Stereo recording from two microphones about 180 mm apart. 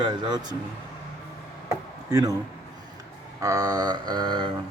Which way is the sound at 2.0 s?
20° right (ahead or behind).